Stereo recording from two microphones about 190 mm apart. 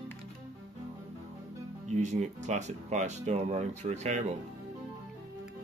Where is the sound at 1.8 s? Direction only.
35° right (ahead or behind).